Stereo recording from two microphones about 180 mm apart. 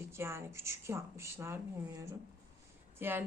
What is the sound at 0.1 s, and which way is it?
Speech, 15° right (ahead or behind).